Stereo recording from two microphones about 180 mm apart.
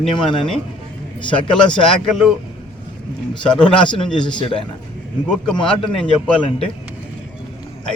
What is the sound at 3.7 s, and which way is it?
Speech, 25° left (ahead or behind).